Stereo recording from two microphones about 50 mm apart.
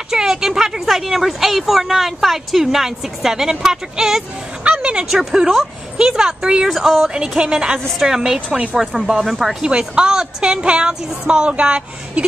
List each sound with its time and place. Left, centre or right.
0.1 s speech: centre
4.6 s a sound: right
5.1 s a woman's voice: centre
6.7 s speech: centre
7.2 s a woman's voice: centre
8.0 s a woman's voice: centre
9.7 s a woman's voice: centre